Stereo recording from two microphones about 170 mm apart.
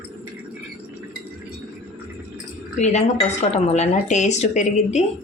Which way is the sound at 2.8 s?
45° left (ahead or behind).